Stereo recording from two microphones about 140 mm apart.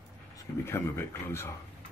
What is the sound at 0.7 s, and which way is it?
Speech, 15° left (ahead or behind).